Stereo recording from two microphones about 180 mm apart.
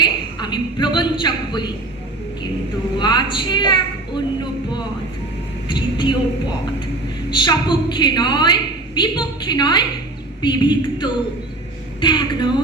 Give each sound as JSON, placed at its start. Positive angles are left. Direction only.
{"t": 0.0, "sound": "a woman's voice", "side_deg": 25}
{"t": 3.0, "sound": "a woman's voice", "side_deg": 25}
{"t": 5.6, "sound": "a woman's voice", "side_deg": 25}
{"t": 7.3, "sound": "a woman's voice", "side_deg": 25}